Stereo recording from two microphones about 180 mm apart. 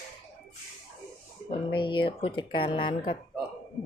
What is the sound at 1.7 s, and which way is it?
Speech, 25° left (ahead or behind).